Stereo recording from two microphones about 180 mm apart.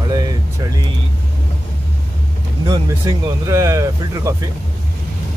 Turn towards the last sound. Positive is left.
turn(degrees=-15)  # may be behind; listen again after turning